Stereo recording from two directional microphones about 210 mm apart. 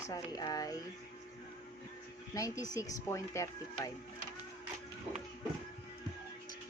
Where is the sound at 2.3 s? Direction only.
15° left (ahead or behind).